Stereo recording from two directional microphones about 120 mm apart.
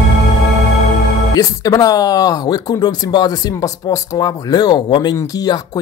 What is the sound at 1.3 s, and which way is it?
Speech, 30° left (ahead or behind).